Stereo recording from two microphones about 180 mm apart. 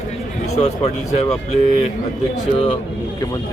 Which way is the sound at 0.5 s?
40° left (ahead or behind).